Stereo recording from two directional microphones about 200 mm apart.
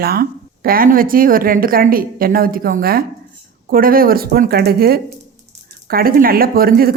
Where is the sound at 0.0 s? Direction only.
50° right (ahead or behind).